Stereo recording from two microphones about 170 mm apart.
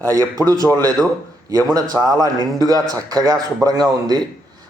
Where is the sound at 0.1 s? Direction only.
20° right (ahead or behind).